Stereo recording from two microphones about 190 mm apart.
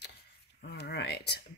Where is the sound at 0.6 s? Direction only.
60° left (ahead or behind).